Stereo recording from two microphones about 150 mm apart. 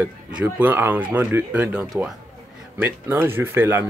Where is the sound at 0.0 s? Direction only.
10° right (ahead or behind).